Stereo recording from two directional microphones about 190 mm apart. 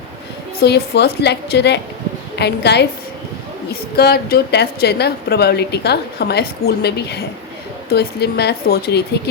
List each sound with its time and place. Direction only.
0.6 s a woman's voice: 60° left (ahead or behind)